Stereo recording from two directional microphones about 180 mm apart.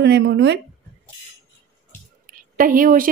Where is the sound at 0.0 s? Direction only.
70° right (ahead or behind).